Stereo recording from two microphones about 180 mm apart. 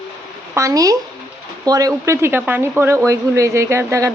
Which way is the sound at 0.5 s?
20° right (ahead or behind).